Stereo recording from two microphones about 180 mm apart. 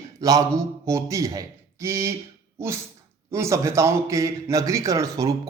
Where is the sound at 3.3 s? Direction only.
15° right (ahead or behind).